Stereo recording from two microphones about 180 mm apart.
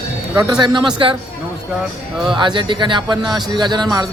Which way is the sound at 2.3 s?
25° right (ahead or behind).